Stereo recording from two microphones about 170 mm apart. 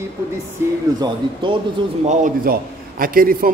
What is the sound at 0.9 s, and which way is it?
Speech, 25° right (ahead or behind).